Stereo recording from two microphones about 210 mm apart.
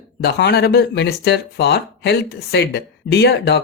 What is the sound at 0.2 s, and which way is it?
Speech, 50° left (ahead or behind).